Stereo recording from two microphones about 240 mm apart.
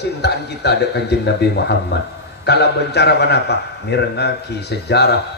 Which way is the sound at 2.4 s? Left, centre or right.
Left.